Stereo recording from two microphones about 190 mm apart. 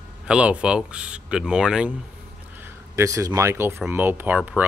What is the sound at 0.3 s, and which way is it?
Speech, 5° right (ahead or behind).